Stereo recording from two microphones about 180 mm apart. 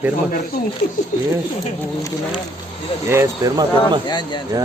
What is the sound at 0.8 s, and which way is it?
Speech, 55° left (ahead or behind).